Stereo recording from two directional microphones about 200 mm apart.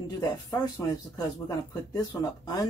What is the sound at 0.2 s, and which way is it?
Speech, 20° left (ahead or behind).